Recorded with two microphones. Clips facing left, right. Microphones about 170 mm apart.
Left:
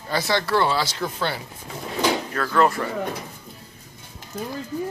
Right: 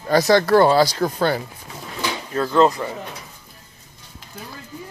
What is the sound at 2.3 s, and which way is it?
Speech, 20° right (ahead or behind).